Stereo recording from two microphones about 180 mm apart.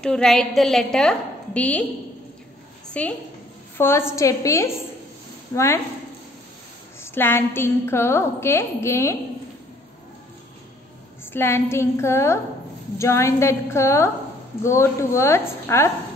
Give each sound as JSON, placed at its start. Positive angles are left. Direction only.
{"t": 0.0, "sound": "a woman's voice", "side_deg": 5}
{"t": 2.9, "sound": "a woman's voice", "side_deg": 10}
{"t": 7.0, "sound": "a woman's voice", "side_deg": 15}
{"t": 11.3, "sound": "a woman's voice", "side_deg": 15}